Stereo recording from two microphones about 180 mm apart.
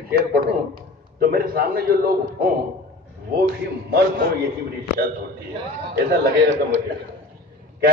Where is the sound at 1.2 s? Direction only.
55° right (ahead or behind).